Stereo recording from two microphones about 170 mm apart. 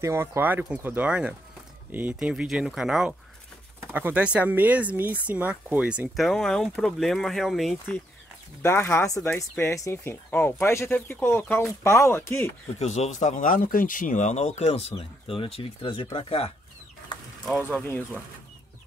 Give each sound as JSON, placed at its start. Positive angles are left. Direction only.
{"t": 0.0, "sound": "speech", "side_deg": -15}
{"t": 8.6, "sound": "speech", "side_deg": 15}
{"t": 12.7, "sound": "speech", "side_deg": 40}
{"t": 17.6, "sound": "speech", "side_deg": 10}